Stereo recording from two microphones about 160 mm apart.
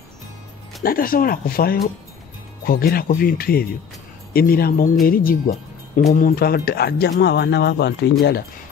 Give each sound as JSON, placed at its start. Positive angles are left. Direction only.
{"t": 0.8, "sound": "speech", "side_deg": 65}